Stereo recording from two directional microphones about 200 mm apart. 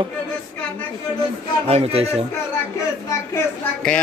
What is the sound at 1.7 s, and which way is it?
Speech, 30° right (ahead or behind).